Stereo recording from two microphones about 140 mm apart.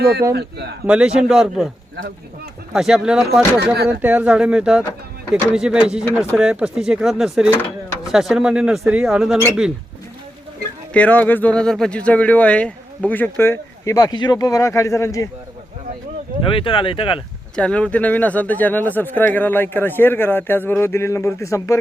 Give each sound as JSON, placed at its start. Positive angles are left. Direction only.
{"t": 0.9, "sound": "speech", "side_deg": -5}
{"t": 2.7, "sound": "speech", "side_deg": -5}
{"t": 10.9, "sound": "speech", "side_deg": 10}
{"t": 16.5, "sound": "speech", "side_deg": 40}
{"t": 17.6, "sound": "speech", "side_deg": 10}